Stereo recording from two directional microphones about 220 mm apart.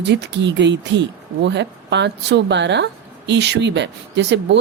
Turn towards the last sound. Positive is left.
turn(degrees=-50)  # may be behind; listen again after turning